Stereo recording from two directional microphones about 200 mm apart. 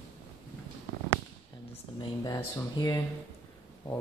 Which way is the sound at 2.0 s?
20° left (ahead or behind).